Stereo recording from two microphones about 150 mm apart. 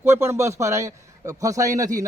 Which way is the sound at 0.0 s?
15° right (ahead or behind).